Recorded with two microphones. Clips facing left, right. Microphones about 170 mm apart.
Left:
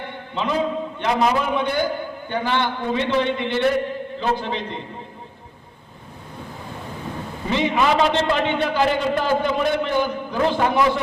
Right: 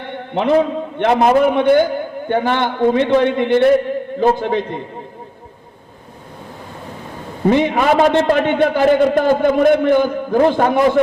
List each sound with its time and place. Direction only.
0.3 s a man's voice: 60° right (ahead or behind)
7.4 s a man's voice: 50° right (ahead or behind)